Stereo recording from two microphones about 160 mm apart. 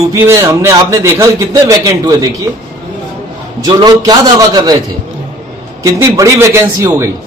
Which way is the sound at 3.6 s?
25° right (ahead or behind).